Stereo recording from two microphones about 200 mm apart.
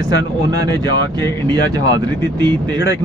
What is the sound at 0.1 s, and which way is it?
Speech, 20° right (ahead or behind).